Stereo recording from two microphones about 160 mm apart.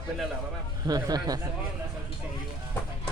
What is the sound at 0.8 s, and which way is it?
Speech, 25° right (ahead or behind).